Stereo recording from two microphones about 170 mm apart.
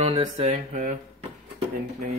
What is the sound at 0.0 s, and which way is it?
Music, 35° right (ahead or behind).